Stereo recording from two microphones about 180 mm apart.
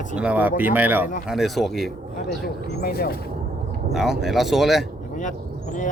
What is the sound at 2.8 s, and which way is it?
Speech, 60° left (ahead or behind).